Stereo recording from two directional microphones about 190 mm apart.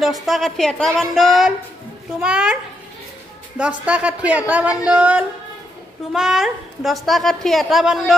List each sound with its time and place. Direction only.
0.0 s a woman's voice: centre (ahead or behind)